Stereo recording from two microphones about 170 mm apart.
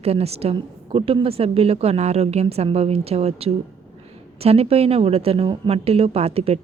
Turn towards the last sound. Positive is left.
turn(degrees=-35)  # may be behind; listen again after turning